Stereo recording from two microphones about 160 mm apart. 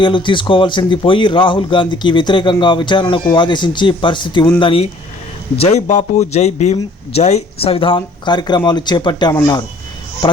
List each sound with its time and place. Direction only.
0.0 s a man's voice: 30° left (ahead or behind)
5.5 s a man's voice: 45° left (ahead or behind); by 9.3 s 25° left (ahead or behind)